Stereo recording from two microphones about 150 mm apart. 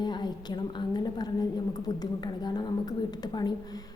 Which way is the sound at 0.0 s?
30° left (ahead or behind).